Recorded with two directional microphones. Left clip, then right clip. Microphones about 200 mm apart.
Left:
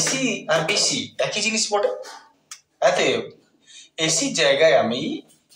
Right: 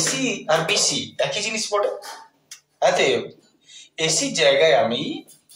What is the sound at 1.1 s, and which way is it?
Speech, 15° left (ahead or behind).